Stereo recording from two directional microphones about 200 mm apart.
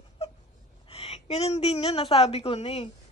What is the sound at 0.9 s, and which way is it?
A woman's voice, 30° left (ahead or behind).